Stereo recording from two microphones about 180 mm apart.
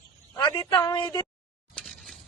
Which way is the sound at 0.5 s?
20° left (ahead or behind).